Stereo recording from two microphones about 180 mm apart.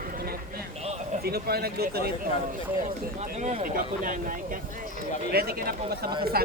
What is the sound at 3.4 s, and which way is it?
Speech, 45° right (ahead or behind).